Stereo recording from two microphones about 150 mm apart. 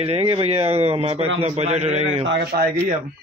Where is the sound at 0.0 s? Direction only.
40° right (ahead or behind).